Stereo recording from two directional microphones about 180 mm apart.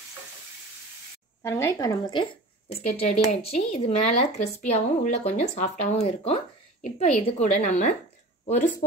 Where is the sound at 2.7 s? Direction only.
35° left (ahead or behind).